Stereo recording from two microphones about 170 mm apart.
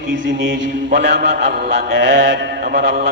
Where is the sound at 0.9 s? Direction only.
90° right.